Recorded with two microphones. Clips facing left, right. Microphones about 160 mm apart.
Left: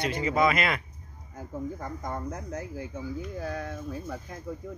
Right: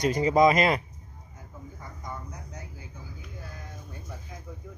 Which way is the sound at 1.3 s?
75° left (ahead or behind).